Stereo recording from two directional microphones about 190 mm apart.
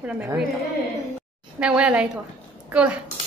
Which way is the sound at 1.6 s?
5° right (ahead or behind).